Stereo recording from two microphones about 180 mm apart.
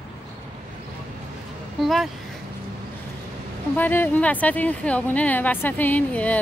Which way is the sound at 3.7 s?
10° left (ahead or behind).